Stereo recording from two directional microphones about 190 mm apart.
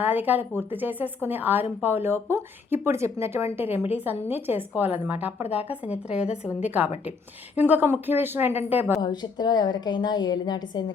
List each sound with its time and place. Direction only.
0.0 s a woman's voice: 10° right (ahead or behind)
9.0 s a woman's voice: 20° left (ahead or behind)